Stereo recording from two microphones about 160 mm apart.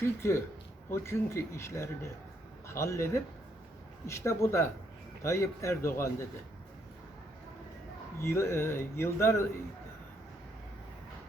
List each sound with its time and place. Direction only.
0.2 s speech: 15° left (ahead or behind)
8.2 s speech: 15° left (ahead or behind)